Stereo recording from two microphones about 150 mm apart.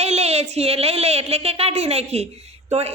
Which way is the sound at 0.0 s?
45° right (ahead or behind).